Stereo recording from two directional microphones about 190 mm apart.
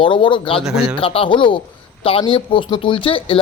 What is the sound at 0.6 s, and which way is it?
Speech, centre (ahead or behind).